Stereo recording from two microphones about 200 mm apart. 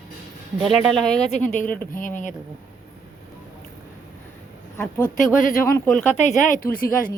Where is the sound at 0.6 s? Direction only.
Centre (ahead or behind).